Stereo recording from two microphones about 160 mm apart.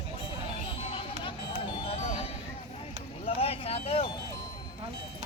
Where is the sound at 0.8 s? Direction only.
35° left (ahead or behind).